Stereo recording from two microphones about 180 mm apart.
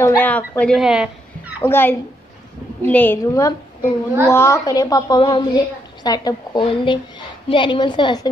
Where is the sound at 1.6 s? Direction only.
10° left (ahead or behind).